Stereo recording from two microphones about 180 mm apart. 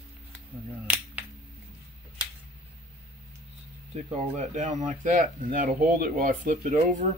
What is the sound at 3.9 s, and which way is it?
Speech, 40° right (ahead or behind).